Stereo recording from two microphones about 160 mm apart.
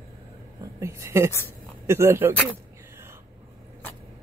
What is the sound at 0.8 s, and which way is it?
Speech, 15° right (ahead or behind).